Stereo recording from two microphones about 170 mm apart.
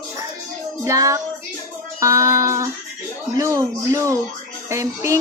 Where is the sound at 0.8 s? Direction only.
20° right (ahead or behind).